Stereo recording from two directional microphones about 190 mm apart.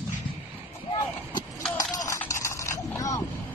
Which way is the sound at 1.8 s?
20° left (ahead or behind).